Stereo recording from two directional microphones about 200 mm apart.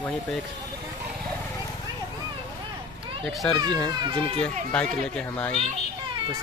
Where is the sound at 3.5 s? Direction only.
20° right (ahead or behind).